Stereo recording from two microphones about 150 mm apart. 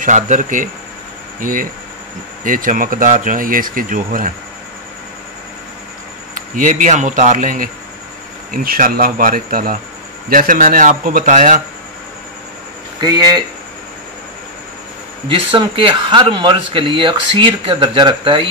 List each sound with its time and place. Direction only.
0.0 s speech: 60° right (ahead or behind)
6.3 s speech: 60° right (ahead or behind)
13.0 s speech: 30° right (ahead or behind)
15.2 s speech: 35° right (ahead or behind)